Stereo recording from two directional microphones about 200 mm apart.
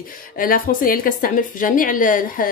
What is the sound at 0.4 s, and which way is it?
A woman's voice, 45° left (ahead or behind).